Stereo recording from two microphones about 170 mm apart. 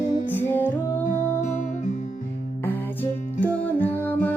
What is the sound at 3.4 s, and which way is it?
Music, 10° left (ahead or behind).